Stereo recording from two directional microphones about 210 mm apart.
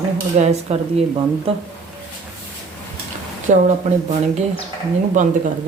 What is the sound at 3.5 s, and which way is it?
Speech, 35° right (ahead or behind).